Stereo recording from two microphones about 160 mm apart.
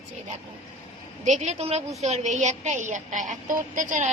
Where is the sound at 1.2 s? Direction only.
45° right (ahead or behind).